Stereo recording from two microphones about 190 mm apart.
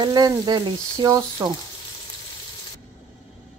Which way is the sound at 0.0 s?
20° right (ahead or behind).